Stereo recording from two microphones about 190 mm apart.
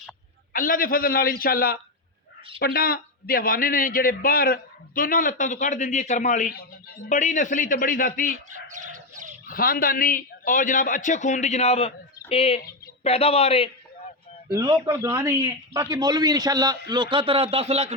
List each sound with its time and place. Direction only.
0.5 s a man's voice: 45° left (ahead or behind)
6.5 s a man's voice: 50° left (ahead or behind)
8.5 s bird: 40° right (ahead or behind)
9.5 s a man's voice: 50° left (ahead or behind); by 13.7 s 30° left (ahead or behind)
14.5 s a man's voice: 20° right (ahead or behind)